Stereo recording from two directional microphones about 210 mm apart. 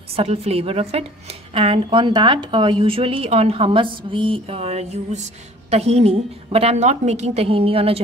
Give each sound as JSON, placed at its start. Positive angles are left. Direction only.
{"t": 0.1, "sound": "a woman's voice", "side_deg": -30}